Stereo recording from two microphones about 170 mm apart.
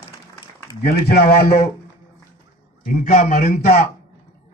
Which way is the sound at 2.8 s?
45° left (ahead or behind).